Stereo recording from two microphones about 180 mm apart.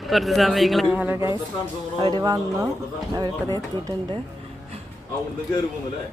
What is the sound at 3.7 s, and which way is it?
Speech, 25° right (ahead or behind).